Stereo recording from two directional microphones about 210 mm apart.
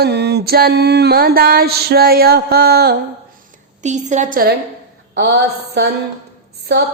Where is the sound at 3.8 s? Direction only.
35° right (ahead or behind).